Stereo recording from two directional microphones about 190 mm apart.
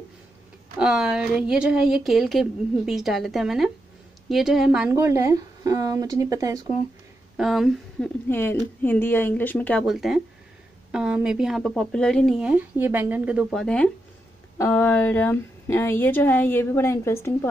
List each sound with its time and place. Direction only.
0.7 s a woman's voice: 5° right (ahead or behind)
7.3 s speech: centre (ahead or behind)
8.3 s a woman's voice: 10° left (ahead or behind)